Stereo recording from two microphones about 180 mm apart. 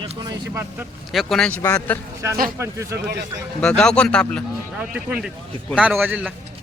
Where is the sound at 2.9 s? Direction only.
65° right (ahead or behind).